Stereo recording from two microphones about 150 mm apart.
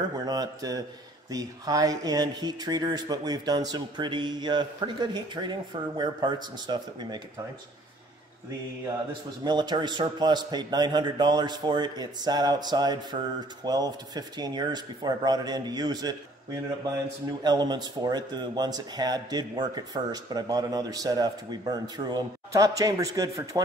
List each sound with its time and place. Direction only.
0.1 s speech: 25° right (ahead or behind)
9.4 s speech: 30° right (ahead or behind)